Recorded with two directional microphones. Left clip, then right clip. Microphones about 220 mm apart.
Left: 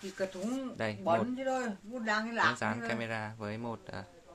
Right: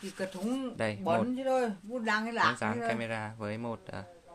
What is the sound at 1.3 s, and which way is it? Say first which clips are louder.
A woman's voice: right 4 dB; 50° right (ahead or behind).